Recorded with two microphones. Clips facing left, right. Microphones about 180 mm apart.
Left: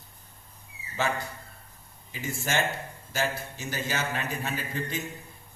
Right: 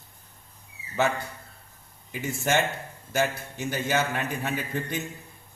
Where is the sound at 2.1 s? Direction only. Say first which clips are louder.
Right 5 dB; 55° right (ahead or behind).